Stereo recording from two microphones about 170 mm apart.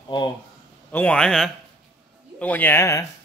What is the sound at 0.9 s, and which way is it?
A man's voice, 5° left (ahead or behind).